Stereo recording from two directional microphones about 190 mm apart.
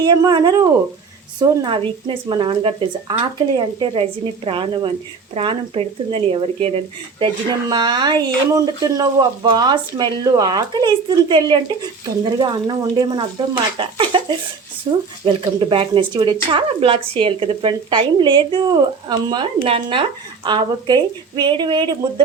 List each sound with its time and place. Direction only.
0.0 s speech: 20° right (ahead or behind)